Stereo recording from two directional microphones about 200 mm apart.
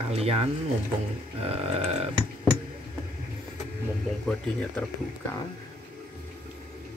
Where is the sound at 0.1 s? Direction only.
30° right (ahead or behind).